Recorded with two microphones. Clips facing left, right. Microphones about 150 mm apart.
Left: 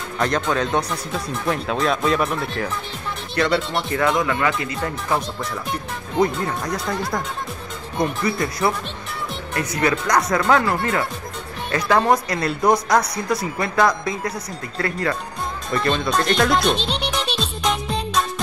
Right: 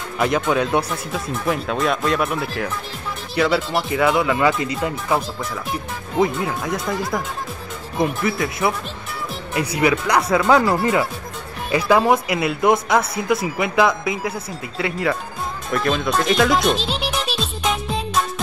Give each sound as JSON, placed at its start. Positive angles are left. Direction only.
{"t": 0.2, "sound": "speech", "side_deg": -5}
{"t": 4.4, "sound": "speech", "side_deg": -20}
{"t": 5.1, "sound": "speech", "side_deg": 0}
{"t": 9.8, "sound": "speech", "side_deg": -10}
{"t": 15.7, "sound": "music", "side_deg": 0}